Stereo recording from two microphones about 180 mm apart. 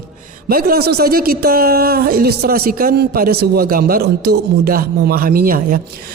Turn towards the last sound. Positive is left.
turn(degrees=-55)  # may be behind; listen again after turning